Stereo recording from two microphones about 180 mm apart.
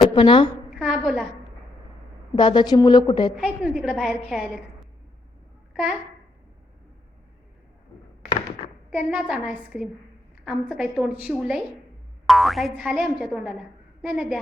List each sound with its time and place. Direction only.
0.1 s a woman's voice: 30° left (ahead or behind)
0.8 s speech: centre (ahead or behind)
2.3 s a woman's voice: 25° left (ahead or behind)
3.3 s speech: centre (ahead or behind)
5.7 s a child's voice: centre (ahead or behind)
8.9 s speech: centre (ahead or behind)